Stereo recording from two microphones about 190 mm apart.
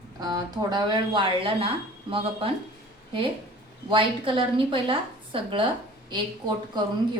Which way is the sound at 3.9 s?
25° right (ahead or behind).